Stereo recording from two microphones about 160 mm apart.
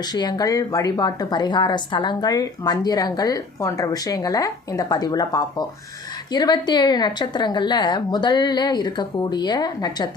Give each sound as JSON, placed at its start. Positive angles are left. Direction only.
{"t": 0.0, "sound": "speech", "side_deg": 25}